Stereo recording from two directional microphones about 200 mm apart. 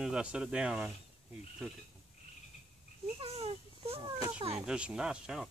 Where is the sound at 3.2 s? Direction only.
30° right (ahead or behind).